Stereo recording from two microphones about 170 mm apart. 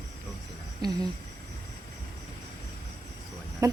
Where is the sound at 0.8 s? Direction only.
20° right (ahead or behind).